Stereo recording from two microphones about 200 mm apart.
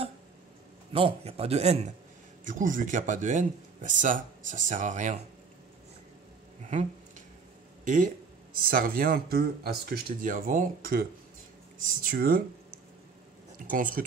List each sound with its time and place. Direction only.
0.9 s speech: 30° right (ahead or behind)
6.7 s a sound: 35° right (ahead or behind)
7.8 s speech: 40° right (ahead or behind)
13.7 s speech: 45° right (ahead or behind)